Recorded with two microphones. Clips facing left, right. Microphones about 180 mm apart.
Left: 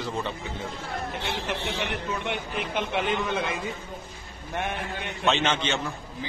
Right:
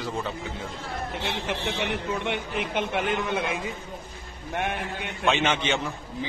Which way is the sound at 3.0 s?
10° right (ahead or behind).